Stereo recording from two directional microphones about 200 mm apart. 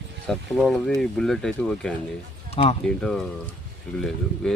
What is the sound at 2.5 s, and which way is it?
Speech, 30° left (ahead or behind).